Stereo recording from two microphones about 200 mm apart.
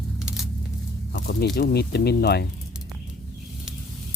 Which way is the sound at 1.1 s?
50° left (ahead or behind).